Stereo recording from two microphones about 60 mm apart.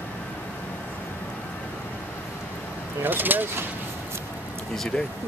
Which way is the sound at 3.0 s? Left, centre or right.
Right.